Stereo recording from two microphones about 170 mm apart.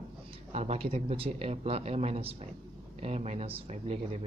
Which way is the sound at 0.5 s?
40° right (ahead or behind).